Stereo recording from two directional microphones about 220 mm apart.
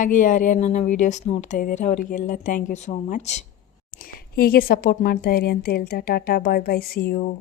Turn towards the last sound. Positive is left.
turn(degrees=45)  # may be behind; listen again after turning